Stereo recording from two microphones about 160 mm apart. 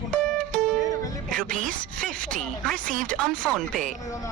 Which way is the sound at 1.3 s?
5° left (ahead or behind).